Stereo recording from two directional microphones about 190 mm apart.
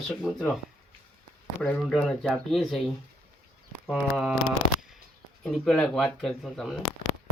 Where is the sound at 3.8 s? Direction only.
Centre (ahead or behind).